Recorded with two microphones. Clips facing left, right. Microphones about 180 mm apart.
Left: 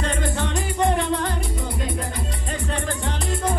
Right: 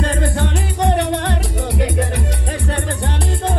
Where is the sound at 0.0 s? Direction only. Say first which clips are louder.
Right 5 dB; 30° right (ahead or behind).